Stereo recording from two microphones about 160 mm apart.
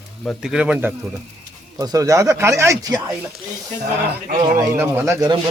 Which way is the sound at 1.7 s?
20° right (ahead or behind).